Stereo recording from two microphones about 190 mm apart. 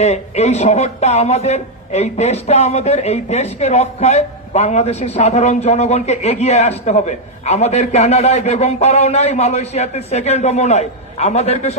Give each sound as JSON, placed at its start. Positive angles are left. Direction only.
{"t": 0.0, "sound": "speech", "side_deg": 35}